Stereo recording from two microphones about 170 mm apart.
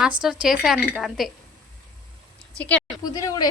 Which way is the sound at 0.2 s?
5° right (ahead or behind).